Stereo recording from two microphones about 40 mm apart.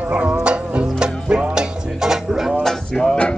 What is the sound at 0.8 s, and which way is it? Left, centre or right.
Music, right.